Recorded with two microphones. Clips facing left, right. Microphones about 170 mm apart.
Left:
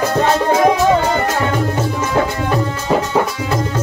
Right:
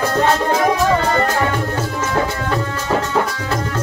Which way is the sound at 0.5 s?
20° left (ahead or behind).